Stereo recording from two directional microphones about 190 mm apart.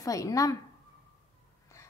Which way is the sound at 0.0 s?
15° left (ahead or behind).